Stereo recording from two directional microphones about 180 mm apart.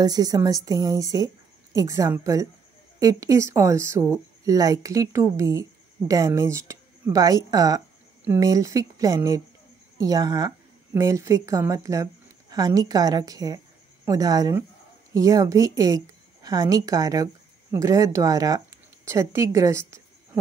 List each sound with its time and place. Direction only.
0.0 s a woman's voice: 20° right (ahead or behind)